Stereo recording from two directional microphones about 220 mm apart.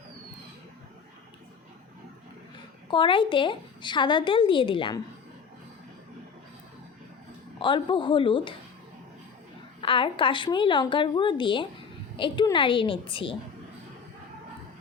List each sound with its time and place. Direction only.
2.9 s a woman's voice: 20° left (ahead or behind)
7.6 s a woman's voice: 20° left (ahead or behind)
9.8 s a woman's voice: 25° left (ahead or behind)